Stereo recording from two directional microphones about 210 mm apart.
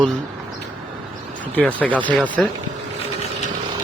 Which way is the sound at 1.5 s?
5° left (ahead or behind).